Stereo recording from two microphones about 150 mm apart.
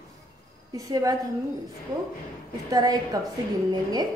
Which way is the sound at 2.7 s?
25° right (ahead or behind).